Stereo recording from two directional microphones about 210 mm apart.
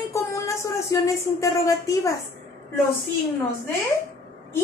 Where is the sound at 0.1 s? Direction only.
15° left (ahead or behind).